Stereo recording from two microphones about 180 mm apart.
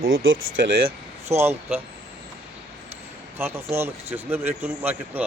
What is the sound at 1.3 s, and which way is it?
Speech, 15° right (ahead or behind).